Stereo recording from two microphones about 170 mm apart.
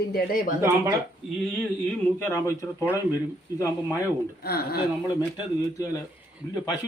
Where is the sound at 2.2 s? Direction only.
15° left (ahead or behind).